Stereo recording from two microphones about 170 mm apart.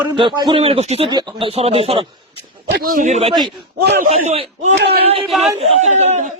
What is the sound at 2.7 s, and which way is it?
Speech, 55° right (ahead or behind).